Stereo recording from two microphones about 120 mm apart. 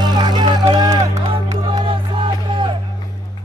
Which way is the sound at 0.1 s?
35° right (ahead or behind).